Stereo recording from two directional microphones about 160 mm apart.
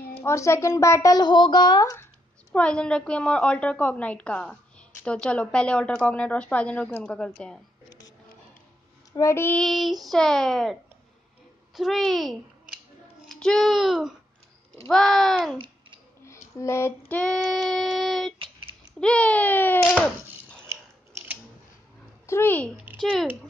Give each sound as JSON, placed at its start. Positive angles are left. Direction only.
{"t": 0.2, "sound": "speech", "side_deg": 15}
{"t": 2.5, "sound": "a woman's voice", "side_deg": 5}
{"t": 9.1, "sound": "a woman's voice", "side_deg": 15}
{"t": 15.5, "sound": "babbling", "side_deg": -30}
{"t": 16.3, "sound": "a sound", "side_deg": 20}
{"t": 17.1, "sound": "child singing", "side_deg": 5}
{"t": 18.9, "sound": "a woman's voice", "side_deg": 5}
{"t": 22.2, "sound": "speech", "side_deg": 15}
{"t": 22.9, "sound": "speech", "side_deg": 0}